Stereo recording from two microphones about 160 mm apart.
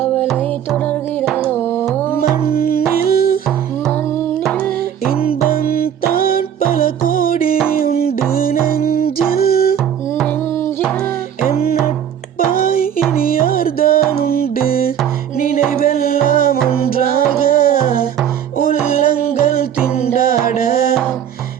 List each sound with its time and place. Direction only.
2.5 s music: 70° left (ahead or behind)
5.6 s music: 65° left (ahead or behind)
12.5 s music: 65° left (ahead or behind)
20.1 s music: 65° left (ahead or behind)